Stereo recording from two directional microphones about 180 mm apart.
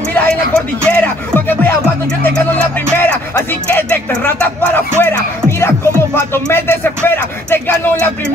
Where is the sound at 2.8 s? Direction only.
10° left (ahead or behind).